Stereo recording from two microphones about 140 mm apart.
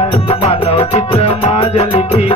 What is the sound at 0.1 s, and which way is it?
Music, 45° left (ahead or behind).